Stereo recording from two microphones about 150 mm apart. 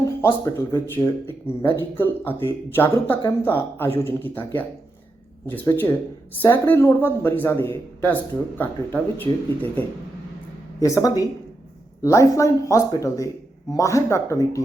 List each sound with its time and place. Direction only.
0.0 s speech: 20° left (ahead or behind)